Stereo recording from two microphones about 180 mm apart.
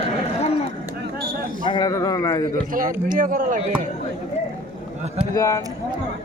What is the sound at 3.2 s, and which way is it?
Speech, 50° right (ahead or behind).